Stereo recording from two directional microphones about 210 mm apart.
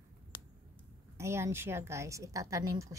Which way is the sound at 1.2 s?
15° right (ahead or behind).